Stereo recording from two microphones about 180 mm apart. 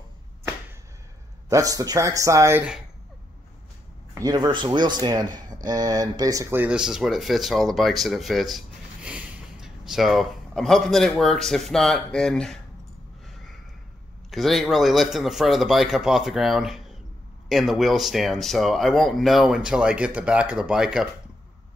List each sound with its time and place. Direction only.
1.5 s speech: 20° right (ahead or behind)
4.1 s speech: 20° right (ahead or behind); by 12.5 s 5° left (ahead or behind)
14.3 s speech: centre (ahead or behind)